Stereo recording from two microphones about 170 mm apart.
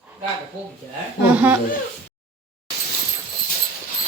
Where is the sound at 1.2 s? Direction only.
10° right (ahead or behind).